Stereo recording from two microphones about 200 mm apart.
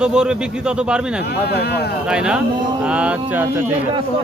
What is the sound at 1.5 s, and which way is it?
Speech, 55° left (ahead or behind).